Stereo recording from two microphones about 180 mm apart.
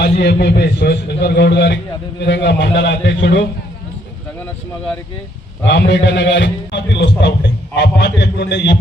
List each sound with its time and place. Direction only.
0.0 s a man's voice: 65° left (ahead or behind)
5.6 s a man's voice: 75° left (ahead or behind)